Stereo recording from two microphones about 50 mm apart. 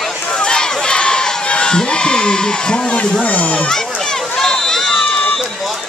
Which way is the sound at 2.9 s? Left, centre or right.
Left.